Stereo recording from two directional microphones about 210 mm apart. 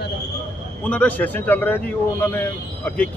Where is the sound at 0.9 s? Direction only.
5° left (ahead or behind).